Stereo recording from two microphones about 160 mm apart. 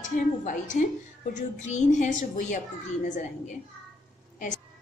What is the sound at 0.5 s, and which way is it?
A child's voice, 55° left (ahead or behind).